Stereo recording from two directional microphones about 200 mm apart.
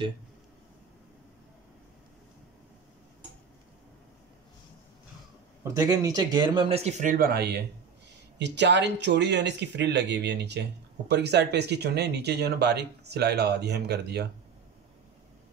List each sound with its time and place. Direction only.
5.6 s speech: 15° right (ahead or behind); by 14.3 s 55° right (ahead or behind)